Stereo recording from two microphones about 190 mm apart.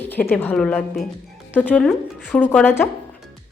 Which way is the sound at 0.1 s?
10° left (ahead or behind).